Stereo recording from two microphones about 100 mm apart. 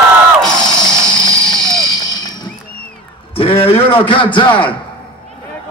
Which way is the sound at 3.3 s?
65° left (ahead or behind).